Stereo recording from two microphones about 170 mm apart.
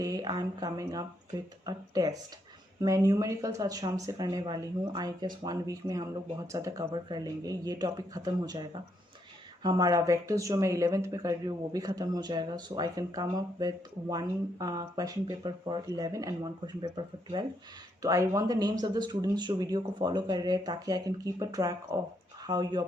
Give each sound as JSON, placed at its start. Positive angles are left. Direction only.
{"t": 0.0, "sound": "speech", "side_deg": -20}
{"t": 9.6, "sound": "speech", "side_deg": -20}